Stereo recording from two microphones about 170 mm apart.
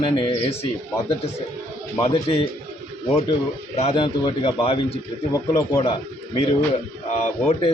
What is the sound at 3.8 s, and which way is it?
A man's voice, 35° left (ahead or behind).